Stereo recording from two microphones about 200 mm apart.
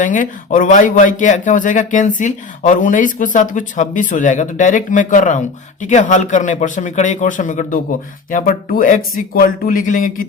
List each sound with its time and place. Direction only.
0.0 s speech: 40° left (ahead or behind)